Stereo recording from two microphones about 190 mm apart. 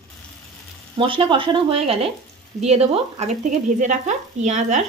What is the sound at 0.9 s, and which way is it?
A woman's voice, 25° right (ahead or behind).